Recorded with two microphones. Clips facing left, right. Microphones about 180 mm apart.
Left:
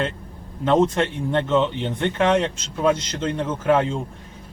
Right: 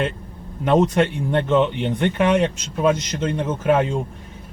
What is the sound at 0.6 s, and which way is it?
Speech, 15° right (ahead or behind).